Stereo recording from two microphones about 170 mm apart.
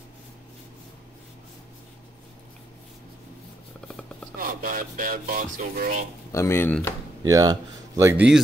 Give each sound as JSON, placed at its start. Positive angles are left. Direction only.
{"t": 3.8, "sound": "a sound", "side_deg": 5}
{"t": 4.4, "sound": "speech", "side_deg": -55}
{"t": 6.3, "sound": "speech", "side_deg": 15}
{"t": 7.2, "sound": "speech", "side_deg": -20}